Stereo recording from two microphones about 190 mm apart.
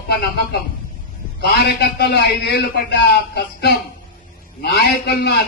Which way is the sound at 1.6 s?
60° left (ahead or behind).